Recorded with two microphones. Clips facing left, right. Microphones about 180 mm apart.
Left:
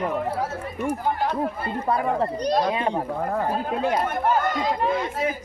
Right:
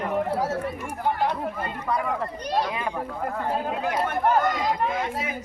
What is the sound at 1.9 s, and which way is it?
Speech, 30° left (ahead or behind).